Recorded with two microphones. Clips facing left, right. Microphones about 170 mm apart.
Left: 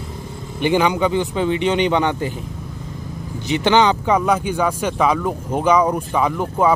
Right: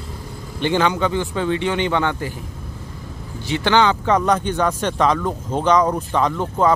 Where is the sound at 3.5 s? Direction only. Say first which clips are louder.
Left 2 dB; 15° left (ahead or behind).